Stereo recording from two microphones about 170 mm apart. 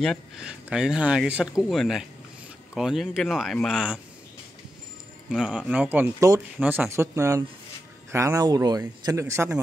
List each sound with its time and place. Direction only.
0.0 s speech: centre (ahead or behind)
5.3 s speech: 5° right (ahead or behind)